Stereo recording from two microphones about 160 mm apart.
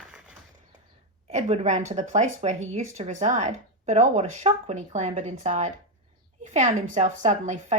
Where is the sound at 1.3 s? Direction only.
45° right (ahead or behind).